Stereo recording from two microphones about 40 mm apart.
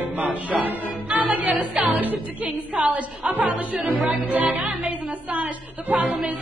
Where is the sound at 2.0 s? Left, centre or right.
Right.